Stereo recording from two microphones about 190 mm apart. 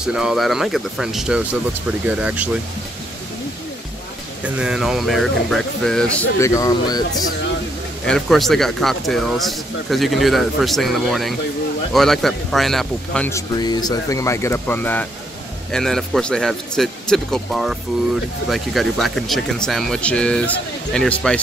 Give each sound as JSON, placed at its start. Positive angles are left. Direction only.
{"t": 0.0, "sound": "speech", "side_deg": -5}
{"t": 4.6, "sound": "speech", "side_deg": -5}
{"t": 6.4, "sound": "speech", "side_deg": 15}
{"t": 8.1, "sound": "speech", "side_deg": 0}
{"t": 13.3, "sound": "speech", "side_deg": 20}